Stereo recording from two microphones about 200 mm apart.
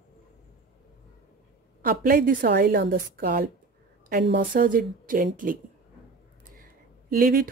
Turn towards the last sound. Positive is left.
turn(degrees=-45)  # may be behind; listen again after turning